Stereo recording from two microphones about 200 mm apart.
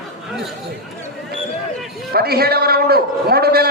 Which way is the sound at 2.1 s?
50° right (ahead or behind).